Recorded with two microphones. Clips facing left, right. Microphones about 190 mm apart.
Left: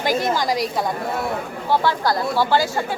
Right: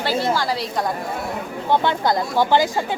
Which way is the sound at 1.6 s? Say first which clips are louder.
Right 1 dB; 20° right (ahead or behind).